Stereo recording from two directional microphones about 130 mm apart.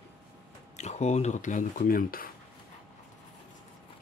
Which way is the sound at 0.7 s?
60° left (ahead or behind).